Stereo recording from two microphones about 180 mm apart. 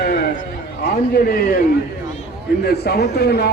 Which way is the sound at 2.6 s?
60° left (ahead or behind).